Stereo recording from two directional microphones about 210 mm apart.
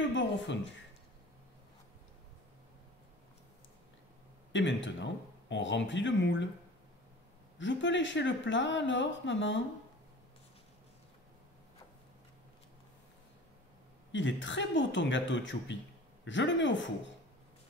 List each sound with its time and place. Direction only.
0.0 s a sound: 60° left (ahead or behind)
4.5 s speech: 60° left (ahead or behind)
7.5 s speech: 60° left (ahead or behind)
14.1 s speech: 60° left (ahead or behind)